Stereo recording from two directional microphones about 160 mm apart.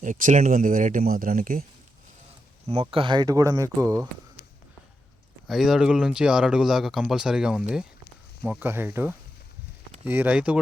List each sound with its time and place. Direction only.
0.0 s speech: 55° right (ahead or behind)
2.8 s speech: 30° right (ahead or behind)
5.5 s speech: centre (ahead or behind)